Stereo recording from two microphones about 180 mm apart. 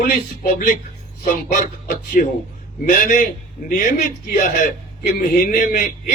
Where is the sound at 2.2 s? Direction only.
50° left (ahead or behind).